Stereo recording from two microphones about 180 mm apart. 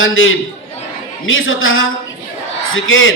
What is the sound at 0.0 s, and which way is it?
A man's voice, 90° left.